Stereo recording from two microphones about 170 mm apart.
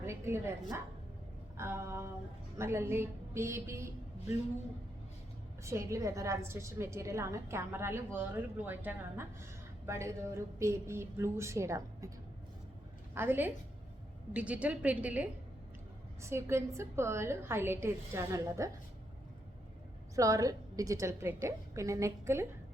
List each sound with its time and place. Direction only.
0.0 s a woman's voice: 15° right (ahead or behind)
5.6 s a woman's voice: 15° right (ahead or behind)
13.1 s a woman's voice: 10° right (ahead or behind)
20.1 s a woman's voice: 20° right (ahead or behind)